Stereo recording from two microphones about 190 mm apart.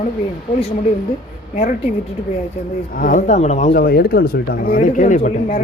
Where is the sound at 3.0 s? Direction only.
45° left (ahead or behind).